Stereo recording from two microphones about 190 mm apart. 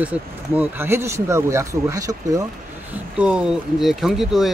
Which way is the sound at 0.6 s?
10° right (ahead or behind).